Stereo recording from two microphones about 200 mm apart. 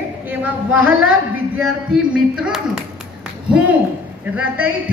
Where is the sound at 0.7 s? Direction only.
85° right.